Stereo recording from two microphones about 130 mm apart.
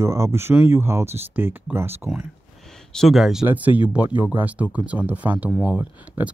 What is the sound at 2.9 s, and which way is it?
Speech, centre (ahead or behind).